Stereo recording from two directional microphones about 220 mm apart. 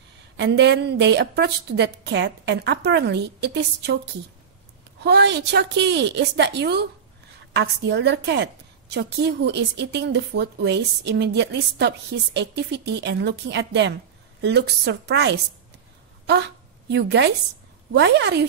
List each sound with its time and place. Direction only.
0.4 s a woman's voice: 50° right (ahead or behind)